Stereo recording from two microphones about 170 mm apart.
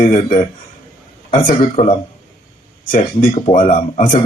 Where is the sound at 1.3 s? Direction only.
55° left (ahead or behind).